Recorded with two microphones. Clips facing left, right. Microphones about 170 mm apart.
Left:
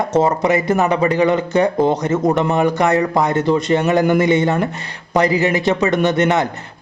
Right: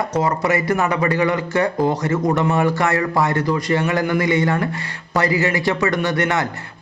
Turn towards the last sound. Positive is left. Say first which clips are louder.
# left 5 dB
turn(degrees=20)  # may be behind; listen again after turning